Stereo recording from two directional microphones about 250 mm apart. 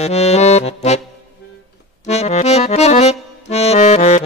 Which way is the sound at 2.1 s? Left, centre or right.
Left.